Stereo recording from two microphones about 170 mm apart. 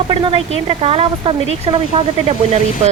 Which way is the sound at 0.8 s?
35° right (ahead or behind).